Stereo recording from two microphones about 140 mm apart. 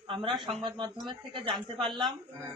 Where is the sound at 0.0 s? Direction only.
40° right (ahead or behind).